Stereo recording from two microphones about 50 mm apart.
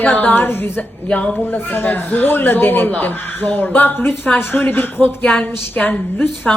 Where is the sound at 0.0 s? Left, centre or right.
Left.